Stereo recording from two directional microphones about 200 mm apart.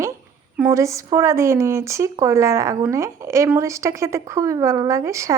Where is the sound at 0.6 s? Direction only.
15° right (ahead or behind).